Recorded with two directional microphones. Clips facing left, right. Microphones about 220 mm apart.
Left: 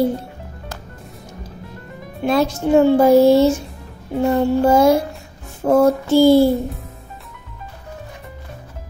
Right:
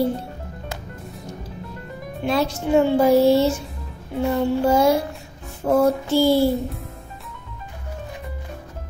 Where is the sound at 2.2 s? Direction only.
45° left (ahead or behind).